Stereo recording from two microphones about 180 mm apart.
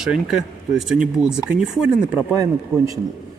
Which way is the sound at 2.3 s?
20° right (ahead or behind).